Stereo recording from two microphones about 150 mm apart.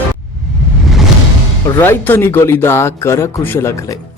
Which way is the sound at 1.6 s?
15° left (ahead or behind).